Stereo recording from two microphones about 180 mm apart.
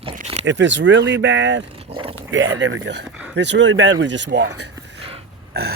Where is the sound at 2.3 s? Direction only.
90° right; by 4.6 s 75° right (ahead or behind).